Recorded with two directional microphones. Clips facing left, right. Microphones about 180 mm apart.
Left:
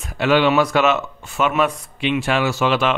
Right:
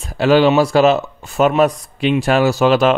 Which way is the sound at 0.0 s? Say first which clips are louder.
Right 4 dB; 35° right (ahead or behind).